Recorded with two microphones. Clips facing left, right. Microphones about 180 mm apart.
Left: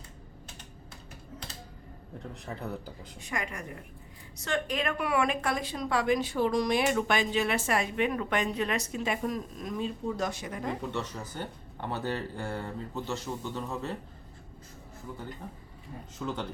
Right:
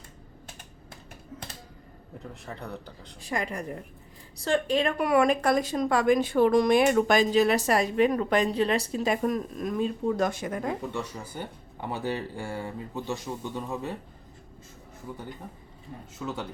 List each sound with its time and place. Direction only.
2.3 s speech: centre (ahead or behind)
3.2 s a woman's voice: 35° right (ahead or behind)
9.3 s speech: 55° right (ahead or behind)
10.9 s speech: 10° right (ahead or behind)
16.1 s speech: 5° right (ahead or behind)